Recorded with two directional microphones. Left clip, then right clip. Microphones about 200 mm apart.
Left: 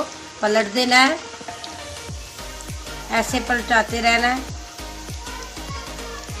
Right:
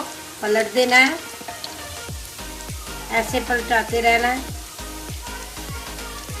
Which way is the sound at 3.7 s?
15° left (ahead or behind).